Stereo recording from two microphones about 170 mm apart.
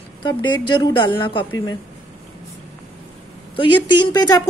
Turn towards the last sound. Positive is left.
turn(degrees=20)  # may be behind; listen again after turning